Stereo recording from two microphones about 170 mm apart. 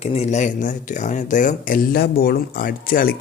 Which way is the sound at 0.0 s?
40° left (ahead or behind).